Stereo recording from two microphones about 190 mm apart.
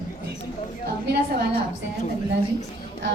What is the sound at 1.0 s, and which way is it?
Speech, 55° right (ahead or behind).